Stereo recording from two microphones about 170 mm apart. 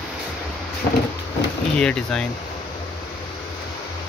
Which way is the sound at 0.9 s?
70° left (ahead or behind).